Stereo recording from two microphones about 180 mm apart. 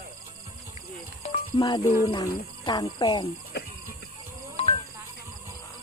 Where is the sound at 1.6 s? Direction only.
25° left (ahead or behind).